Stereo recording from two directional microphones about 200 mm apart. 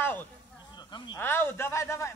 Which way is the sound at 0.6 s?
20° left (ahead or behind).